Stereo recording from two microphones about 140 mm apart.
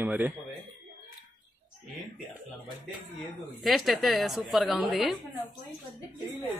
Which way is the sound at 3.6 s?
Centre (ahead or behind).